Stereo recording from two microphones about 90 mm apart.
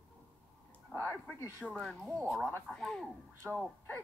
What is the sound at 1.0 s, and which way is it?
Speech, 25° left (ahead or behind).